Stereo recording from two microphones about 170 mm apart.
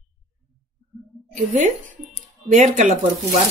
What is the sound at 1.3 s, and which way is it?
A woman's voice, 45° right (ahead or behind).